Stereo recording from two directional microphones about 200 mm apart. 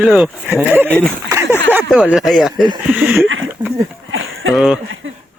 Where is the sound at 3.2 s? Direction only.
75° right (ahead or behind).